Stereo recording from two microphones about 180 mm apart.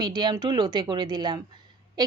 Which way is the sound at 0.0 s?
25° right (ahead or behind).